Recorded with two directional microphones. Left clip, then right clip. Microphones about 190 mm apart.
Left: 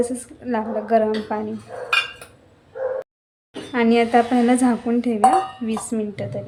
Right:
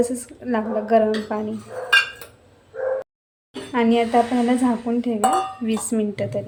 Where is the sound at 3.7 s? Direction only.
5° left (ahead or behind).